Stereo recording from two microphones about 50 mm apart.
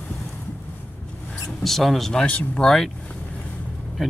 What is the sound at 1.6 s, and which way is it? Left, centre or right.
Speech, centre.